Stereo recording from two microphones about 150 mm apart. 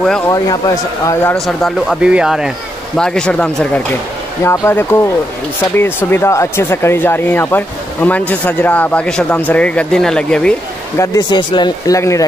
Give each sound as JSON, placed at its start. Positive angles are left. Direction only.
{"t": 0.3, "sound": "speech", "side_deg": 25}
{"t": 1.3, "sound": "speech", "side_deg": 0}
{"t": 11.0, "sound": "speech", "side_deg": 30}